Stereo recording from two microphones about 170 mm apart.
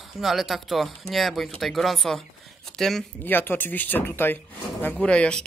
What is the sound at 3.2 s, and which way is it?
Speech, 10° left (ahead or behind).